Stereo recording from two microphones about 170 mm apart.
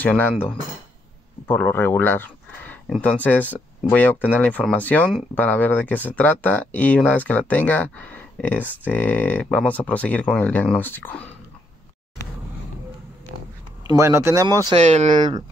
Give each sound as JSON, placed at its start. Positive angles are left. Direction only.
{"t": 0.0, "sound": "speech", "side_deg": 10}
{"t": 13.8, "sound": "speech", "side_deg": -15}